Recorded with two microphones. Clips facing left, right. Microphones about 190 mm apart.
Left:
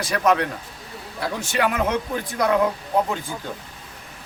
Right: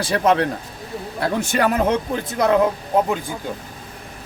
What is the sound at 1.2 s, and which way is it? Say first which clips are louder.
Speech: right 4 dB; 50° right (ahead or behind).